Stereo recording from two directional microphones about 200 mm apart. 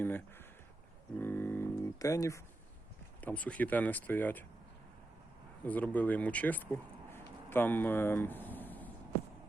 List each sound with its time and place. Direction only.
1.2 s a sound: 10° left (ahead or behind)
3.2 s speech: 10° left (ahead or behind)
5.6 s speech: 10° left (ahead or behind)